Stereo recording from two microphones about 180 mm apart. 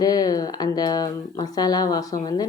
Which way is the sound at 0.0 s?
20° left (ahead or behind).